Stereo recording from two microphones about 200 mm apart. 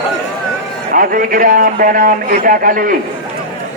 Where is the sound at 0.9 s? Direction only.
45° right (ahead or behind).